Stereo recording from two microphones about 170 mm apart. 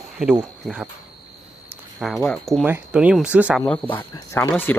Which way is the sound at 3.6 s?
10° left (ahead or behind).